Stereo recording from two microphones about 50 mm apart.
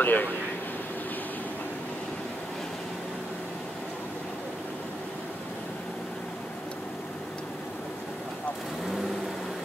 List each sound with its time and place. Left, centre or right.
0.0 s speech: left